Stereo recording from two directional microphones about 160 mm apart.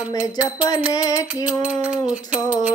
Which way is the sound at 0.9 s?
20° left (ahead or behind).